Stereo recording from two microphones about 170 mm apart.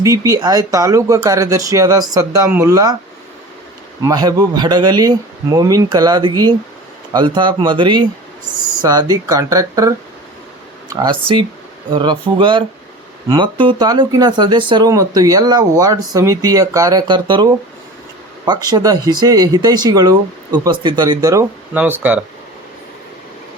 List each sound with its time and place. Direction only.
0.0 s speech: 20° right (ahead or behind)
4.0 s speech: 20° right (ahead or behind)
18.7 s speech: 20° right (ahead or behind)
21.7 s speech: 10° right (ahead or behind)